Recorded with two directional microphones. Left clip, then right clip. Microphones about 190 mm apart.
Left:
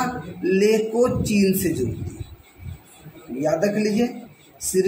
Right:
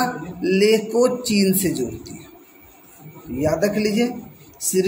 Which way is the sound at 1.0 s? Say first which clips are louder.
Right 2 dB; centre (ahead or behind).